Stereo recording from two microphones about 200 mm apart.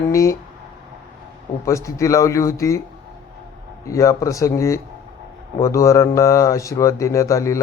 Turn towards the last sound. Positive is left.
turn(degrees=15)  # may be behind; listen again after turning